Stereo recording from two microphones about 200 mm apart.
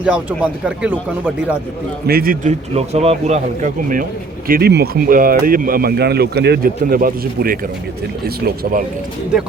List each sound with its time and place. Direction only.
0.0 s speech: 5° right (ahead or behind)
2.0 s speech: 45° right (ahead or behind)